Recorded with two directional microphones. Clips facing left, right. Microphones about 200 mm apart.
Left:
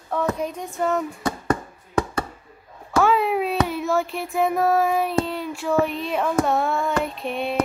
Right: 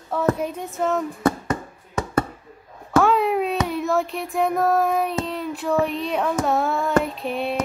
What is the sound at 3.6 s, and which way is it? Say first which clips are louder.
Child singing: right 1 dB; centre (ahead or behind).